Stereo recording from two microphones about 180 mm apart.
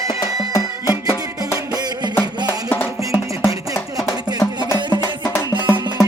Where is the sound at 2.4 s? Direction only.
10° left (ahead or behind).